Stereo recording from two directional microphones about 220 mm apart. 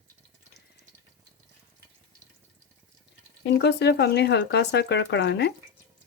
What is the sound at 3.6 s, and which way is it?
Speech, 50° left (ahead or behind).